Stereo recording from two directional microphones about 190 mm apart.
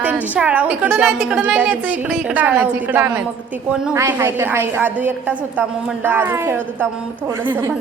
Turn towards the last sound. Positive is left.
turn(degrees=-15)  # may be behind; listen again after turning